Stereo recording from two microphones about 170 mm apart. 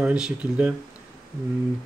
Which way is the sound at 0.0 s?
5° right (ahead or behind).